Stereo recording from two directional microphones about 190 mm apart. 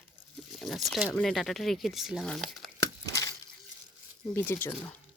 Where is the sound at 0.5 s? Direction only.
Centre (ahead or behind).